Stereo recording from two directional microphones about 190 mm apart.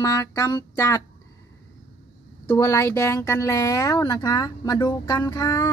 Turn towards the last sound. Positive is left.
turn(degrees=20)  # may be behind; listen again after turning